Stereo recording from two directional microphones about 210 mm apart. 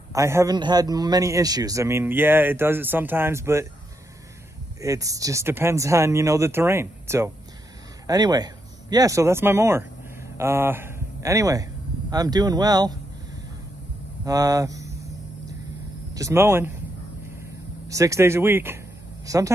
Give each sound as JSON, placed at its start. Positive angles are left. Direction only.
{"t": 0.1, "sound": "a man's voice", "side_deg": -15}
{"t": 4.8, "sound": "a man's voice", "side_deg": -15}
{"t": 14.2, "sound": "speech", "side_deg": -15}
{"t": 16.2, "sound": "a man's voice", "side_deg": -15}
{"t": 17.4, "sound": "vehicle", "side_deg": -15}
{"t": 19.2, "sound": "speech", "side_deg": -15}